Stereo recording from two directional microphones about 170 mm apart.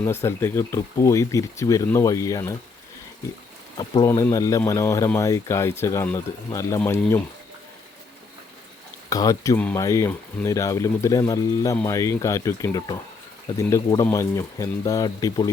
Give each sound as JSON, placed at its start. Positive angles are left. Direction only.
{"t": 0.0, "sound": "speech", "side_deg": 15}
{"t": 3.8, "sound": "speech", "side_deg": 25}
{"t": 9.0, "sound": "speech", "side_deg": 20}